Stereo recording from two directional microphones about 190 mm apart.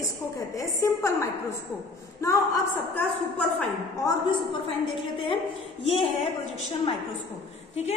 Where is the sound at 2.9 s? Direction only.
10° left (ahead or behind).